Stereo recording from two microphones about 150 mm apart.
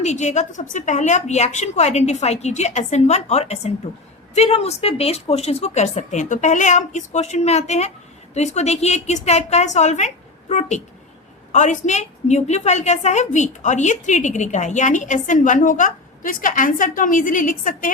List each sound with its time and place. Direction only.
0.0 s a woman's voice: 50° left (ahead or behind)